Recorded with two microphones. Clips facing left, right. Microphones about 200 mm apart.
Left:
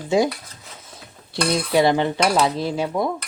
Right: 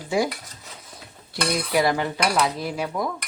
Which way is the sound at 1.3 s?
25° left (ahead or behind).